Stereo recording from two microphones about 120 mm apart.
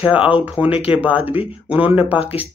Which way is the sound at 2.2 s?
55° left (ahead or behind).